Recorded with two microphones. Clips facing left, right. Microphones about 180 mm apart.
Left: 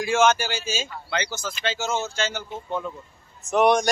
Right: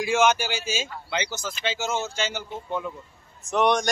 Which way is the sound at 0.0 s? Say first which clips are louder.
Left 1 dB; 15° right (ahead or behind).